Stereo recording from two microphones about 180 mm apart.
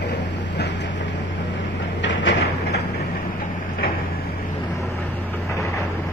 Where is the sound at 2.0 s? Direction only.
85° left.